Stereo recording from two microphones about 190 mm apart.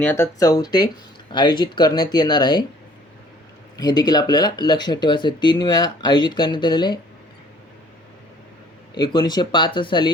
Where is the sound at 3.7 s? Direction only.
20° left (ahead or behind).